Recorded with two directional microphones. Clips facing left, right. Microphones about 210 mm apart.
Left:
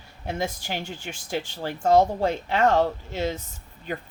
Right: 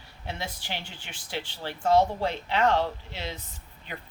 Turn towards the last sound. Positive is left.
turn(degrees=45)  # may be behind; listen again after turning